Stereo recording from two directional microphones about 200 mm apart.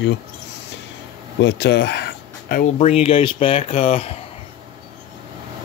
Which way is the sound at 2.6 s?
35° left (ahead or behind).